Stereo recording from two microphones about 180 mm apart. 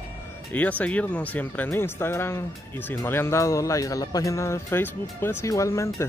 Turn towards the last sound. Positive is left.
turn(degrees=15)  # may be behind; listen again after turning